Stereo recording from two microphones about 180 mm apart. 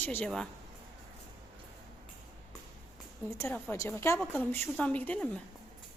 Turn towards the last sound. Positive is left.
turn(degrees=10)  # may be behind; listen again after turning